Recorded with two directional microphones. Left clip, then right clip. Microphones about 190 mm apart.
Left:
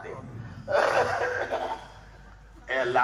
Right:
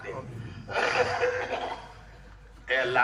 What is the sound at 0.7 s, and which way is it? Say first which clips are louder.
Speech: left 3 dB; 20° left (ahead or behind).